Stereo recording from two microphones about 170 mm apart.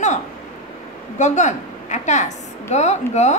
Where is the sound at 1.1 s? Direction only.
45° left (ahead or behind).